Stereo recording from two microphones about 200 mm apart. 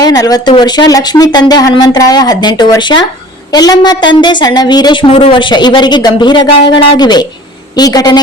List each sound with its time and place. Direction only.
0.0 s speech: 20° left (ahead or behind)